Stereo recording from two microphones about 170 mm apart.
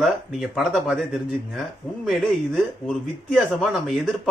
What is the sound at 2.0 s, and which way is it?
Speech, centre (ahead or behind).